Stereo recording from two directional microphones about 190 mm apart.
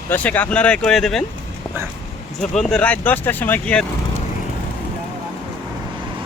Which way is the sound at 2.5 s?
5° left (ahead or behind).